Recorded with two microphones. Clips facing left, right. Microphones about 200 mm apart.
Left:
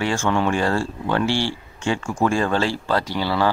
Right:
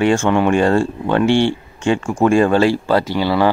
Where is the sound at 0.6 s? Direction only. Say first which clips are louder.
Right 7 dB; 20° right (ahead or behind).